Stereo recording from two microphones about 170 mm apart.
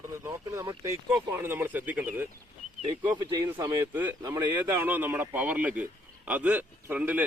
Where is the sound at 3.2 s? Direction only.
25° right (ahead or behind).